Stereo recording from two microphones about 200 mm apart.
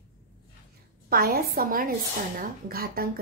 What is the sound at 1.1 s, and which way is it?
A woman's voice, 50° right (ahead or behind).